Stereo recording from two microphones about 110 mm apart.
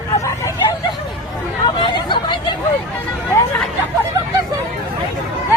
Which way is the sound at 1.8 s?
45° left (ahead or behind).